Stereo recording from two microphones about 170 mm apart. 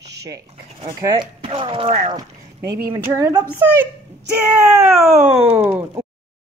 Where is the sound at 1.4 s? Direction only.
35° right (ahead or behind).